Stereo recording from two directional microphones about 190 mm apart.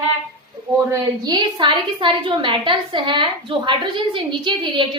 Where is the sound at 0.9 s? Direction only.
20° right (ahead or behind).